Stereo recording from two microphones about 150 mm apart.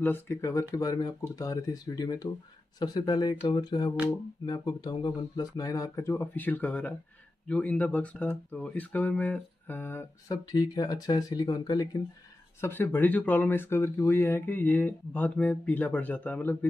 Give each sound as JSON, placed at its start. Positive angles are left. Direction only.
{"t": 0.0, "sound": "speech", "side_deg": 15}